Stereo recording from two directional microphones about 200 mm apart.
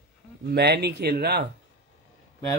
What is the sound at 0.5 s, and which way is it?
Speech, 55° right (ahead or behind).